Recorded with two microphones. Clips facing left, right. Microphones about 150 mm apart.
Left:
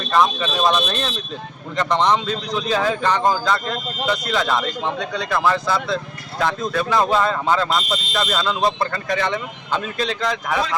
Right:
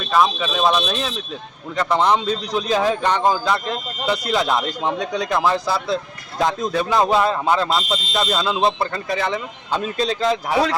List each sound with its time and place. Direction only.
0.1 s speech: 5° right (ahead or behind)
6.4 s speech: 20° right (ahead or behind)
7.7 s speech: 25° right (ahead or behind)
9.1 s speech: 5° right (ahead or behind)
9.7 s speech: 35° right (ahead or behind)